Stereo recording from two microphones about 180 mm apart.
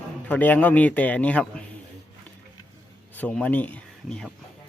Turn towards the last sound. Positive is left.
turn(degrees=5)  # may be behind; listen again after turning